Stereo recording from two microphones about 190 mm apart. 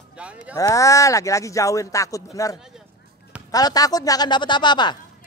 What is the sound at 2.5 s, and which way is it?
Speech, centre (ahead or behind).